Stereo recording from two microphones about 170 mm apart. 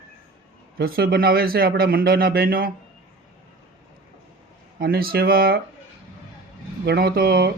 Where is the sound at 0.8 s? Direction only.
65° right (ahead or behind).